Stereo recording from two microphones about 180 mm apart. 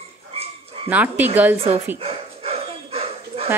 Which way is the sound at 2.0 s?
35° right (ahead or behind).